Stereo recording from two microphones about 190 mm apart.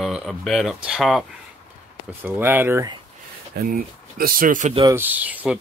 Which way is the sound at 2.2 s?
10° right (ahead or behind).